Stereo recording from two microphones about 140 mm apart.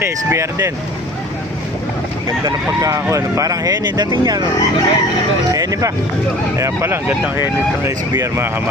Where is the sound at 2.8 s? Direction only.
20° right (ahead or behind).